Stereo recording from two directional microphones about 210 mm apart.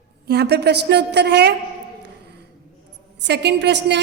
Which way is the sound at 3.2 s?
55° right (ahead or behind).